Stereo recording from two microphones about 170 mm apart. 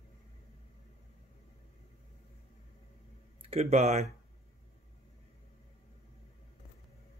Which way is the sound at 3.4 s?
40° right (ahead or behind).